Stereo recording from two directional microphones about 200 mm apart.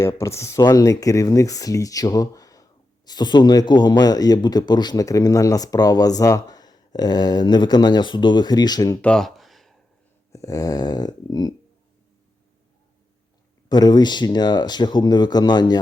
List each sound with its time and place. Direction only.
0.0 s speech: 15° left (ahead or behind)
9.0 s a sound: 5° left (ahead or behind)
10.3 s speech: 15° left (ahead or behind)
13.7 s speech: 20° left (ahead or behind)